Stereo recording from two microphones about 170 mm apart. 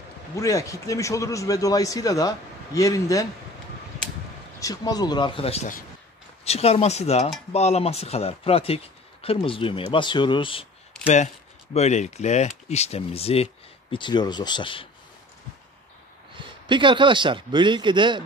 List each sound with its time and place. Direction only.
0.4 s a man's voice: 20° left (ahead or behind)
4.6 s a man's voice: 20° left (ahead or behind)
11.7 s speech: 40° left (ahead or behind)
16.6 s a man's voice: 30° right (ahead or behind)